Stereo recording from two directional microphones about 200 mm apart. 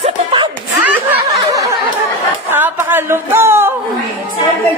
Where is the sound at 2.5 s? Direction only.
10° right (ahead or behind).